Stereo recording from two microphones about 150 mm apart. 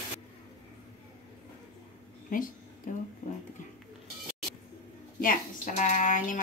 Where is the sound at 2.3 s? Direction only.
65° left (ahead or behind).